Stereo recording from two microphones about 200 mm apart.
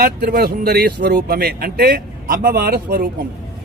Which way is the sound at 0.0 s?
45° right (ahead or behind).